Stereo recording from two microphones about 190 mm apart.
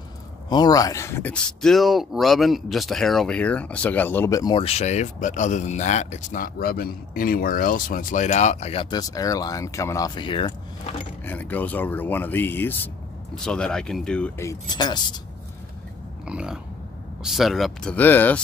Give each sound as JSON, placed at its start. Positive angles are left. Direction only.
{"t": 0.5, "sound": "speech", "side_deg": 20}
{"t": 8.9, "sound": "speech", "side_deg": 20}
{"t": 11.2, "sound": "speech", "side_deg": 10}
{"t": 14.4, "sound": "speech", "side_deg": 20}
{"t": 16.3, "sound": "speech", "side_deg": -5}